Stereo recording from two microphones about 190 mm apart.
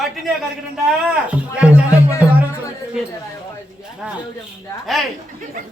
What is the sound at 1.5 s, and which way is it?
Speech, 5° right (ahead or behind).